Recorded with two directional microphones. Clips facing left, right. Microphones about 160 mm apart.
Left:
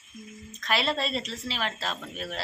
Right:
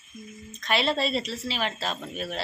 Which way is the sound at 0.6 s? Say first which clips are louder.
Right 2 dB; centre (ahead or behind).